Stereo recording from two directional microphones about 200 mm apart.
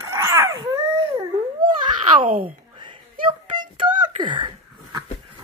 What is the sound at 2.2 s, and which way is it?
Speech, 45° right (ahead or behind).